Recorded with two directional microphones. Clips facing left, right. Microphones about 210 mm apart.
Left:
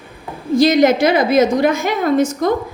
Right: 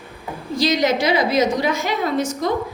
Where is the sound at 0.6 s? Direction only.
50° left (ahead or behind).